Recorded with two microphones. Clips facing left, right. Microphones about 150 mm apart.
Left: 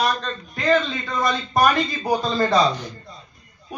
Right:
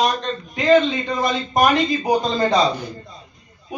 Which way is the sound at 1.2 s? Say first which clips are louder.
Even; 20° right (ahead or behind).